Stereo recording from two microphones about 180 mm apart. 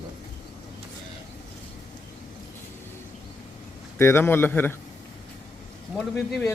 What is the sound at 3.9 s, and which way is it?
Speech, 15° left (ahead or behind).